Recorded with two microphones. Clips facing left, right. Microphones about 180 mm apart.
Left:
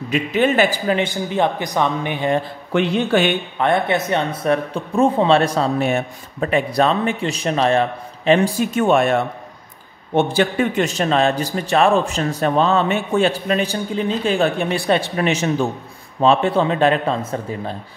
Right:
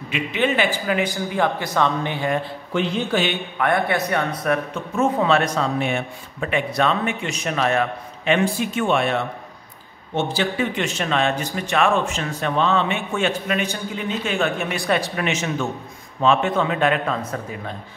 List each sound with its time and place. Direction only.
0.1 s speech: 40° left (ahead or behind)
1.3 s speech: 20° left (ahead or behind)
2.7 s speech: 60° left (ahead or behind)
3.5 s speech: 25° left (ahead or behind)